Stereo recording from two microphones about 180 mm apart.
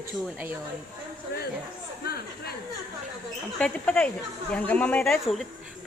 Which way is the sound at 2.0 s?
60° left (ahead or behind).